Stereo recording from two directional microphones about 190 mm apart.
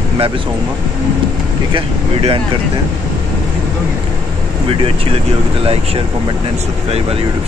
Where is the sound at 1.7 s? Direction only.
30° right (ahead or behind).